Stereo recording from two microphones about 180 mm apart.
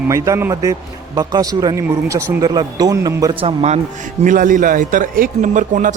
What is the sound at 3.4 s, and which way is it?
A man's voice, 35° right (ahead or behind).